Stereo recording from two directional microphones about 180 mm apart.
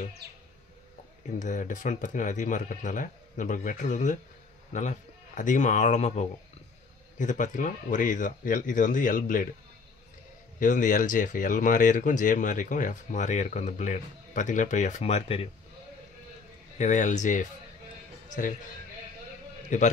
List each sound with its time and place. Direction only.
0.2 s bird: 65° right (ahead or behind)
1.4 s a man's voice: 45° left (ahead or behind)
10.6 s speech: 45° left (ahead or behind)
16.7 s speech: 45° left (ahead or behind)
19.7 s a man's voice: 40° left (ahead or behind)